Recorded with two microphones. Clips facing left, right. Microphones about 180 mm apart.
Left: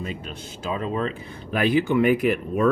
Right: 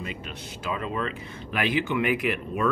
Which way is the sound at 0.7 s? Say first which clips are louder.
Left 4 dB; 35° left (ahead or behind).